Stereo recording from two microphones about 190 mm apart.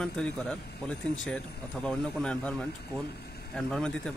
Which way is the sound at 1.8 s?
5° left (ahead or behind).